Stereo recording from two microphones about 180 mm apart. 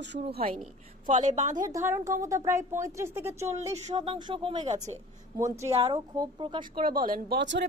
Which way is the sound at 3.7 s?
35° right (ahead or behind).